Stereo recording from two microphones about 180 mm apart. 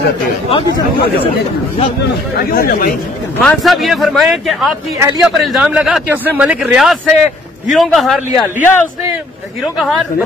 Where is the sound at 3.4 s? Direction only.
Centre (ahead or behind).